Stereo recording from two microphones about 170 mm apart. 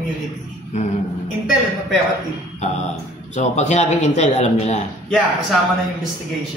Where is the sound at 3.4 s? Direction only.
40° left (ahead or behind).